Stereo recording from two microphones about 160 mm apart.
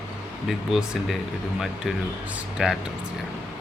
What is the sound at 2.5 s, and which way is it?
Speech, 5° right (ahead or behind).